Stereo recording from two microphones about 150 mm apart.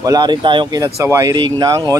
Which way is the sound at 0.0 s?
25° right (ahead or behind).